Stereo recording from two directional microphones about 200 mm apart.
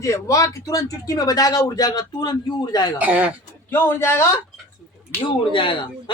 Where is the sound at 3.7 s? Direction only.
10° left (ahead or behind).